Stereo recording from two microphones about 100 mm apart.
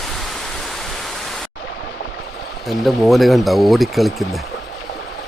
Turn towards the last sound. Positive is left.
turn(degrees=0)  # may be behind; listen again after turning